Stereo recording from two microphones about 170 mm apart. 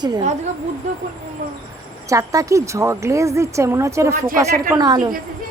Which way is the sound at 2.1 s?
20° right (ahead or behind).